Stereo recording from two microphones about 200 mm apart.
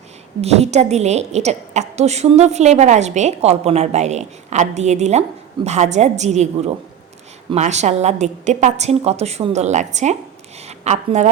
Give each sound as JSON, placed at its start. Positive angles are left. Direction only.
{"t": 0.4, "sound": "a woman's voice", "side_deg": -30}
{"t": 7.5, "sound": "a woman's voice", "side_deg": -35}